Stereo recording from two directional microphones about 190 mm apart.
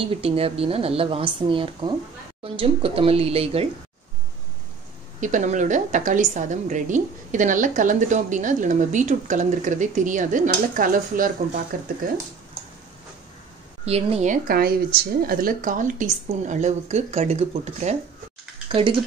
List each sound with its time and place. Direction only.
0.0 s a woman's voice: 30° right (ahead or behind)
5.2 s a woman's voice: 40° right (ahead or behind)
13.8 s a woman's voice: 35° right (ahead or behind)